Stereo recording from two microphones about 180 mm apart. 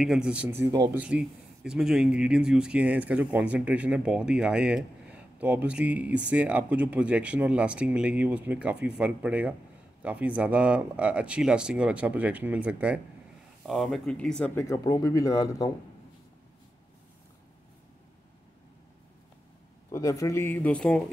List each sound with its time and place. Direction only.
0.0 s speech: 5° right (ahead or behind)
0.7 s speech: 20° right (ahead or behind)
0.9 s speech: 5° right (ahead or behind); by 15.7 s 20° left (ahead or behind)
19.9 s speech: 15° left (ahead or behind)